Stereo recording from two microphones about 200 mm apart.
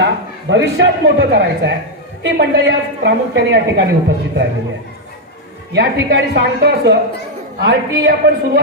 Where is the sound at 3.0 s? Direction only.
60° right (ahead or behind).